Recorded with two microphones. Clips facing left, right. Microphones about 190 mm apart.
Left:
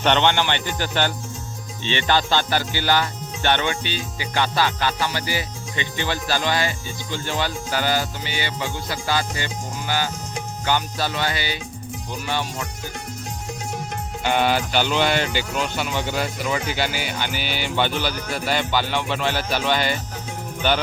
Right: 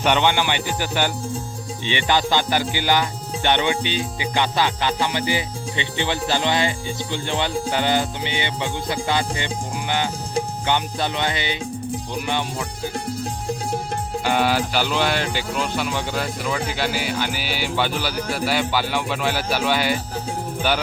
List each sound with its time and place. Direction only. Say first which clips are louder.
0.0 s music: even; 10° right (ahead or behind)
13.1 s music: right 6 dB; 30° right (ahead or behind)
14.3 s speech: even; centre (ahead or behind)
18.3 s music: even; 5° right (ahead or behind)